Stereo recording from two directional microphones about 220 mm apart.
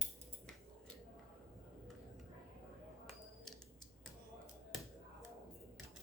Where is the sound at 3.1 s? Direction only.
Centre (ahead or behind).